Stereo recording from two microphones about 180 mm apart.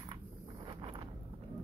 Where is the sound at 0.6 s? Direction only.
30° right (ahead or behind).